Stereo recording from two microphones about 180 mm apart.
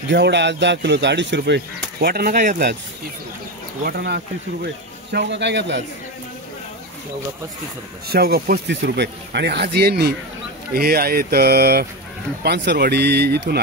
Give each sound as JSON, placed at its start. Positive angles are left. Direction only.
{"t": 0.1, "sound": "speech", "side_deg": -75}
{"t": 3.8, "sound": "speech", "side_deg": -60}
{"t": 5.1, "sound": "speech", "side_deg": -75}
{"t": 8.1, "sound": "speech", "side_deg": -60}